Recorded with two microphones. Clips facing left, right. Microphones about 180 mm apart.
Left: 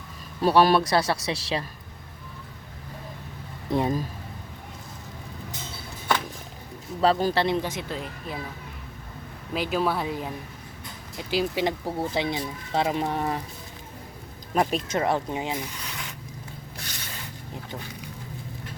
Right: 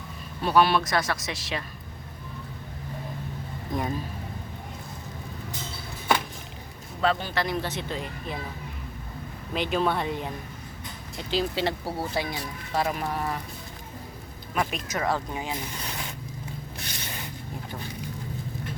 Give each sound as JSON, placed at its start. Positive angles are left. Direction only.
{"t": 0.4, "sound": "speech", "side_deg": 40}
{"t": 3.7, "sound": "speech", "side_deg": 30}
{"t": 7.0, "sound": "speech", "side_deg": 35}
{"t": 7.6, "sound": "speech", "side_deg": 10}
{"t": 9.5, "sound": "speech", "side_deg": 5}
{"t": 14.5, "sound": "speech", "side_deg": 35}
{"t": 15.8, "sound": "a sound", "side_deg": -30}